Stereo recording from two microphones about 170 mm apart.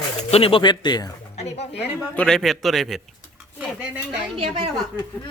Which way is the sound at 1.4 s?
40° left (ahead or behind).